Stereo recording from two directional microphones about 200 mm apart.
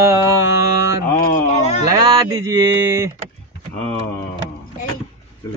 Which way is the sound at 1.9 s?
20° right (ahead or behind).